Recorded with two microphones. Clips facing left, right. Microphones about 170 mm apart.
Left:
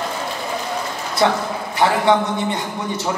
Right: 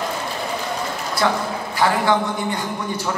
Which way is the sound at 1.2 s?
20° left (ahead or behind).